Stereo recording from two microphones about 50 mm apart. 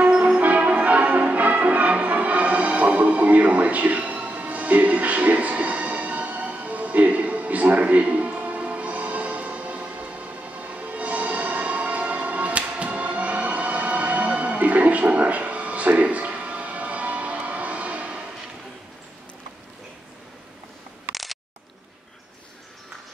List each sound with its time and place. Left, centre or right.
0.1 s change ringing: right
0.4 s change ringing: right
21.1 s a sound: centre